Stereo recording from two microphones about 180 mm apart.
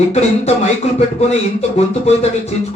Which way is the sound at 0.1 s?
35° left (ahead or behind).